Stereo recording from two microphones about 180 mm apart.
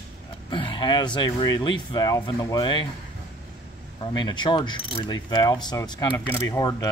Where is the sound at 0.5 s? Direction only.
25° left (ahead or behind).